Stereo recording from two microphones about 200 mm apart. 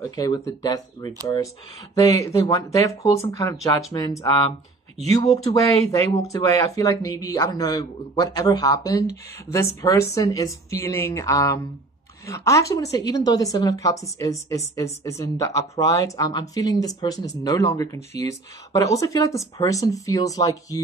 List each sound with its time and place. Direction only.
0.1 s a woman's voice: 20° left (ahead or behind)